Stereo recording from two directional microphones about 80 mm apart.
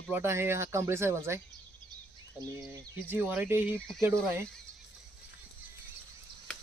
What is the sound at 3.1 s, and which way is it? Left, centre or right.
Speech, right.